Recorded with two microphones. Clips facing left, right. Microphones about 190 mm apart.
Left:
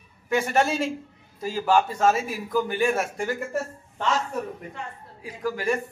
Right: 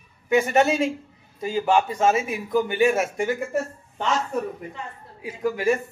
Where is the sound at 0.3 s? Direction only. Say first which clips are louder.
Right 4 dB; centre (ahead or behind).